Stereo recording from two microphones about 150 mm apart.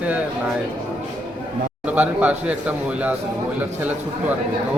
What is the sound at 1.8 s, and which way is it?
A man's voice, 10° right (ahead or behind).